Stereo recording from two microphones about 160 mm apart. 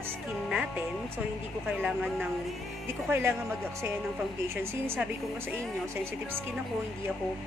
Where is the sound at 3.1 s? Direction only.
15° right (ahead or behind).